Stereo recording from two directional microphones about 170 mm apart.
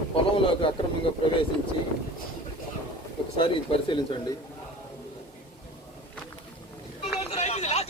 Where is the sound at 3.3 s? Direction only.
30° left (ahead or behind).